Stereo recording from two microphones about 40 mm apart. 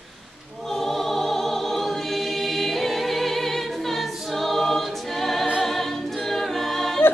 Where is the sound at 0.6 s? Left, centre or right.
Centre.